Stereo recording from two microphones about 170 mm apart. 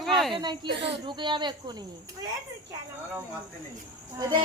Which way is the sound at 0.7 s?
85° right.